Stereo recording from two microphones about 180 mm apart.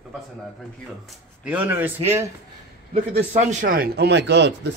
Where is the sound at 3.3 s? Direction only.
45° right (ahead or behind); by 4.7 s 70° right (ahead or behind).